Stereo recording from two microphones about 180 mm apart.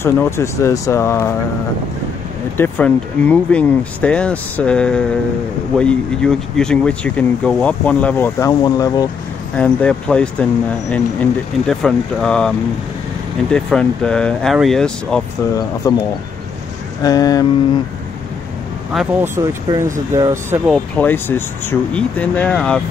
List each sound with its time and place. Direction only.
0.0 s speech: 15° left (ahead or behind)
2.5 s speech: 10° left (ahead or behind)
9.6 s speech: 5° left (ahead or behind)
15.8 s a sound: 20° left (ahead or behind)
19.2 s speech: 15° right (ahead or behind)
20.7 s speech: 10° left (ahead or behind)